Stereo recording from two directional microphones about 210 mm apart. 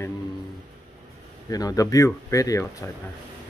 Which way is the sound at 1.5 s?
15° left (ahead or behind).